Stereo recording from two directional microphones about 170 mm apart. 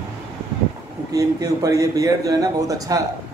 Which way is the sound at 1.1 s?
20° right (ahead or behind).